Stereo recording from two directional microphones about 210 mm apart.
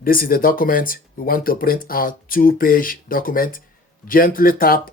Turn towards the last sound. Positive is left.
turn(degrees=45)  # may be behind; listen again after turning